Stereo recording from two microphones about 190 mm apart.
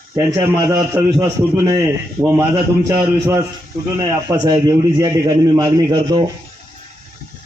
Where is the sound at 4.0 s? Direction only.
20° right (ahead or behind).